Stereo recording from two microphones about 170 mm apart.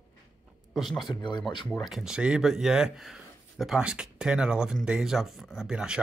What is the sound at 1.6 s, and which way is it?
Speech, centre (ahead or behind).